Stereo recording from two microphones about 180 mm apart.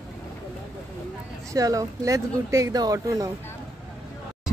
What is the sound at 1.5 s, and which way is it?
Speech, 20° right (ahead or behind).